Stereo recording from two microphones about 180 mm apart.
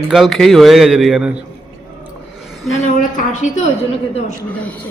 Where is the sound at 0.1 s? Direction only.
Centre (ahead or behind).